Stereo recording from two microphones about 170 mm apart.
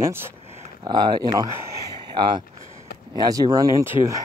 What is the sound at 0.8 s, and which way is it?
Speech, 25° right (ahead or behind).